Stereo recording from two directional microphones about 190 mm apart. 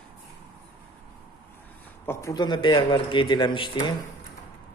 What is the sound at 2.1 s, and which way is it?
A man's voice, 15° left (ahead or behind).